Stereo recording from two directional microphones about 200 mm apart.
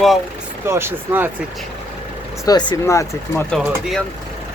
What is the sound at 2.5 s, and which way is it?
Speech, 20° left (ahead or behind).